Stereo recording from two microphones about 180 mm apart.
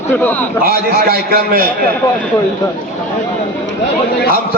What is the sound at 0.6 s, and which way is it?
A man's voice, 55° right (ahead or behind).